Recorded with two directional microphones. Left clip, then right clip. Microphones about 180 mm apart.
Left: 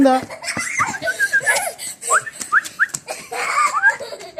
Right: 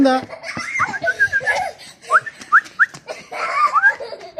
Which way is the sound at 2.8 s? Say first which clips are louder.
Right 3 dB; 10° right (ahead or behind).